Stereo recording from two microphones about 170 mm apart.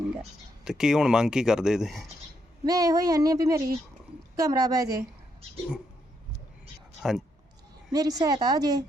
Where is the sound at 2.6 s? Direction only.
20° right (ahead or behind).